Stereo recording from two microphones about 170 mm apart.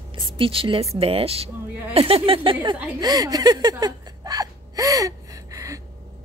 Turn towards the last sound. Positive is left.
turn(degrees=-20)  # may be behind; listen again after turning